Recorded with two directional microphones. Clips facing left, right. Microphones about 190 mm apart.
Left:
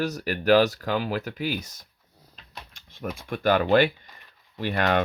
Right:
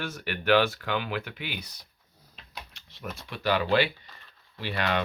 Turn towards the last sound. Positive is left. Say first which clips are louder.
# left 5 dB
turn(degrees=50)  # may be behind; listen again after turning